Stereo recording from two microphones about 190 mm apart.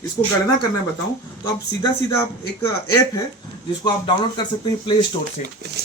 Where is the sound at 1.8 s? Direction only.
15° left (ahead or behind).